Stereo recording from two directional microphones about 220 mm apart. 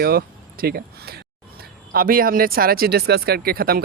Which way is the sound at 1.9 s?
40° right (ahead or behind).